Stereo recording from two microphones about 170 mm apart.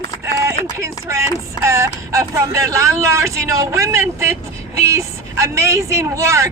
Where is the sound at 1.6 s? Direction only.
15° right (ahead or behind).